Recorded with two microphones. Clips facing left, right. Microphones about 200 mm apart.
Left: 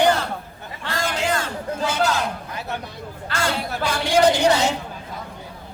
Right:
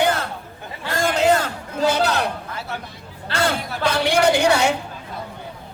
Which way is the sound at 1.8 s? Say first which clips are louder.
Right 4 dB; 40° right (ahead or behind).